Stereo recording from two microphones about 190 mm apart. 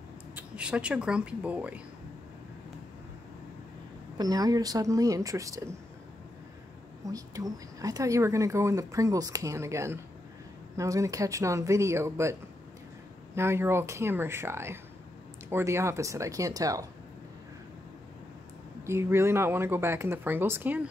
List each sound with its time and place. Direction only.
0.4 s speech: 5° right (ahead or behind)
4.2 s speech: 20° right (ahead or behind)
7.1 s speech: 20° right (ahead or behind)
18.9 s speech: 15° right (ahead or behind)